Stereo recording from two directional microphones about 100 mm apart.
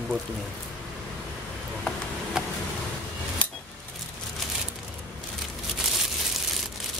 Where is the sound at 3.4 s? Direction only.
15° left (ahead or behind).